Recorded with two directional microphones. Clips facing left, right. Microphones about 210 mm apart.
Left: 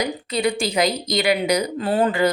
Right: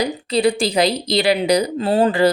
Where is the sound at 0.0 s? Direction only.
30° right (ahead or behind).